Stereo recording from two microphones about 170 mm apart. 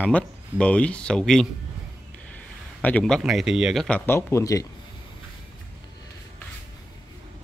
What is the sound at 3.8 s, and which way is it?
Speech, 10° left (ahead or behind).